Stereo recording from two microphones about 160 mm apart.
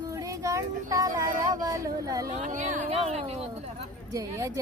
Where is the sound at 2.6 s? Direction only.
50° right (ahead or behind).